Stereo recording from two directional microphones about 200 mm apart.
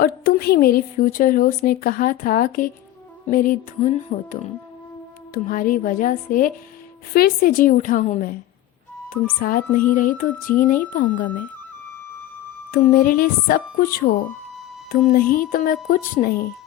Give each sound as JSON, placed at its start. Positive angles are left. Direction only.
{"t": 0.0, "sound": "a woman's voice", "side_deg": 50}
{"t": 9.4, "sound": "a woman's voice", "side_deg": 45}
{"t": 12.7, "sound": "a woman's voice", "side_deg": 45}